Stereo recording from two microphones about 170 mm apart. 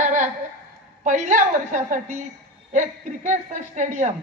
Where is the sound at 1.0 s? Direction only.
45° right (ahead or behind).